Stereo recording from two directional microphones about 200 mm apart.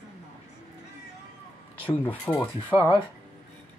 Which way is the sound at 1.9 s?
10° left (ahead or behind).